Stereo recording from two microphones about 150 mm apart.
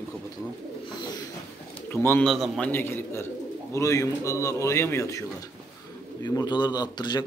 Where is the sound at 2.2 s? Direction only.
Centre (ahead or behind).